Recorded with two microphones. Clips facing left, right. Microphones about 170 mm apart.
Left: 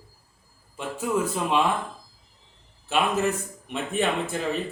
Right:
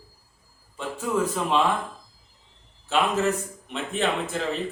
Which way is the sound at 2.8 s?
15° left (ahead or behind).